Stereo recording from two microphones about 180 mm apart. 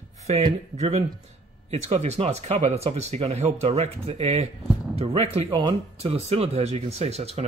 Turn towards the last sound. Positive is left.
turn(degrees=-35)  # may be behind; listen again after turning